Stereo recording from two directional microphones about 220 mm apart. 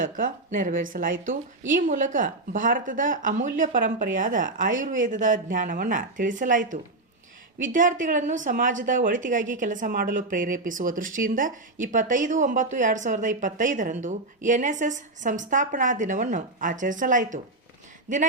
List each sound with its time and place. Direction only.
0.0 s speech: 40° right (ahead or behind)